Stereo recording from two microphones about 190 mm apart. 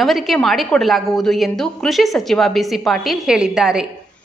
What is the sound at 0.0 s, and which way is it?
A woman's voice, centre (ahead or behind).